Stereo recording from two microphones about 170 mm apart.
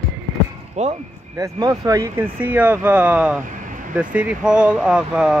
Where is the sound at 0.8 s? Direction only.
45° right (ahead or behind).